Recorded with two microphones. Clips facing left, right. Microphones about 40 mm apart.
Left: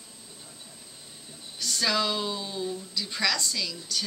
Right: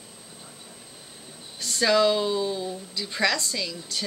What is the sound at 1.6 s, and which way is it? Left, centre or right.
Speech, centre.